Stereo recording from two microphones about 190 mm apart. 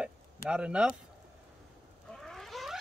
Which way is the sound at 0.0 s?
5° right (ahead or behind).